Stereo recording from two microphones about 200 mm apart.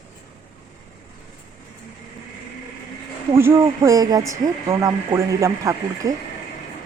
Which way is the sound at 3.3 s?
10° right (ahead or behind).